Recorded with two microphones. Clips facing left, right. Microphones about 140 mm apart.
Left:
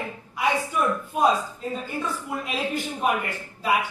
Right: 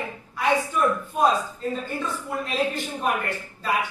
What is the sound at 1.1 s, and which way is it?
Speech, 5° left (ahead or behind).